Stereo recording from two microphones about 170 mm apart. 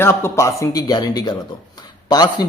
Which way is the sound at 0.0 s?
15° left (ahead or behind).